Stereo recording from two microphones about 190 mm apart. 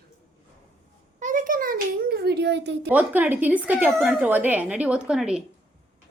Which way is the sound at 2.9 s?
10° right (ahead or behind).